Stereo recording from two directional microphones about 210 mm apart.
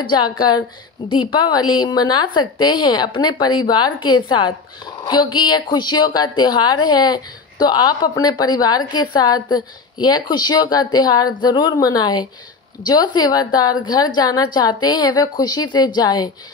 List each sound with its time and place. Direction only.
0.1 s a woman's voice: 20° left (ahead or behind)